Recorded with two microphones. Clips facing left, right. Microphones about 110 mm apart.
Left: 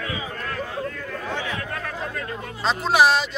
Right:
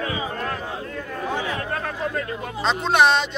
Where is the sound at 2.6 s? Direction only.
5° left (ahead or behind).